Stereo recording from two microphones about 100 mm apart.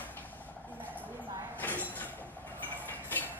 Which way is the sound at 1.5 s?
20° left (ahead or behind).